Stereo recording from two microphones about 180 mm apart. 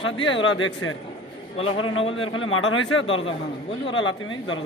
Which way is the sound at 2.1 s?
90° left.